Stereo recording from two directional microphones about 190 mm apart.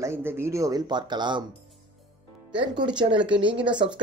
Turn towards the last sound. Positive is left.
turn(degrees=-25)  # may be behind; listen again after turning